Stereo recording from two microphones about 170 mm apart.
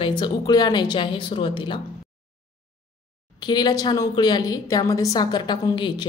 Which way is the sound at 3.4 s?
25° left (ahead or behind).